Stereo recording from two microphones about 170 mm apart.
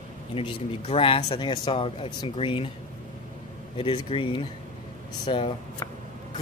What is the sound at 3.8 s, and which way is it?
Speech, 30° left (ahead or behind).